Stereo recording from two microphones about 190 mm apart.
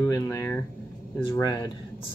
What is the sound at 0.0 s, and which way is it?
Speech, 15° left (ahead or behind).